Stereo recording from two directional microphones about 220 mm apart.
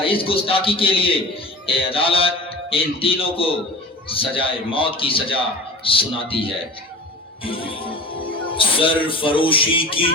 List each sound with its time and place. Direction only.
0.0 s a man's voice: 25° left (ahead or behind)
7.4 s music: 25° left (ahead or behind)
8.4 s a man's voice: 25° left (ahead or behind)